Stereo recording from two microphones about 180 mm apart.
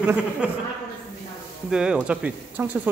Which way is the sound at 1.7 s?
5° right (ahead or behind).